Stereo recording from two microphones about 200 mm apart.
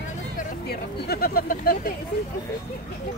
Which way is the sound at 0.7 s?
50° left (ahead or behind).